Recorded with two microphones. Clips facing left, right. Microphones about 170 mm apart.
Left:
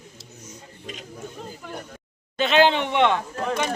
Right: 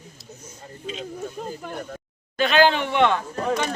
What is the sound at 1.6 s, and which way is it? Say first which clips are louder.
Speech: right 4 dB; 45° right (ahead or behind).